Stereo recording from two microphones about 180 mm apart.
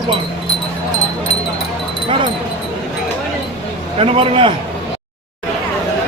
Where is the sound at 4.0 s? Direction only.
30° right (ahead or behind).